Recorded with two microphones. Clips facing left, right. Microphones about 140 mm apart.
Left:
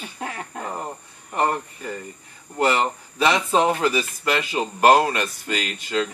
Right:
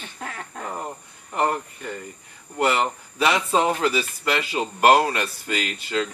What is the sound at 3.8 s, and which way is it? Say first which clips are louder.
Speech: left 1 dB; 20° left (ahead or behind).